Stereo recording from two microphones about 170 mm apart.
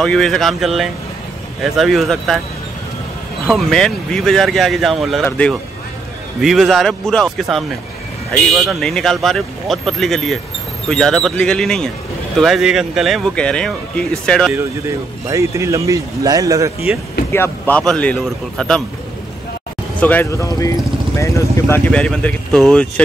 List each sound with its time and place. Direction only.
0.0 s speech: 5° left (ahead or behind)
3.4 s speech: 5° left (ahead or behind)
14.5 s speech: 15° right (ahead or behind)
17.3 s speech: 10° left (ahead or behind)
20.0 s speech: 10° left (ahead or behind)